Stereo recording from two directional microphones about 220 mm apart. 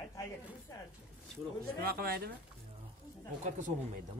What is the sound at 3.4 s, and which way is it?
Speech, 35° right (ahead or behind).